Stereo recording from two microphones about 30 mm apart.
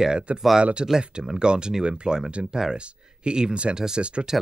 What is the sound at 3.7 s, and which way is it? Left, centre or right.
Speech, right.